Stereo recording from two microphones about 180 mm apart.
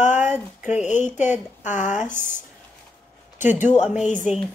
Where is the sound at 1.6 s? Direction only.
45° left (ahead or behind).